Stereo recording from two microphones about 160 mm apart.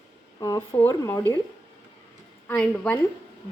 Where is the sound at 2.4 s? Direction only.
5° left (ahead or behind).